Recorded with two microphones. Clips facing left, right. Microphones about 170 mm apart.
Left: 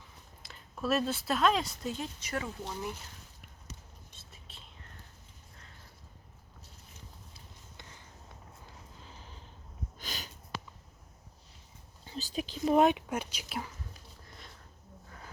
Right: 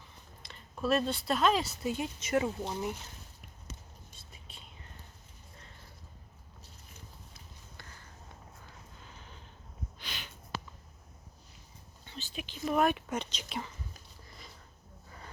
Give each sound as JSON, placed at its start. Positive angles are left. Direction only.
{"t": 0.4, "sound": "speech", "side_deg": 0}
{"t": 2.2, "sound": "speech", "side_deg": -20}
{"t": 10.0, "sound": "sniff", "side_deg": 40}
{"t": 12.0, "sound": "speech", "side_deg": 35}
{"t": 12.9, "sound": "speech", "side_deg": 10}
{"t": 14.3, "sound": "sniff", "side_deg": 0}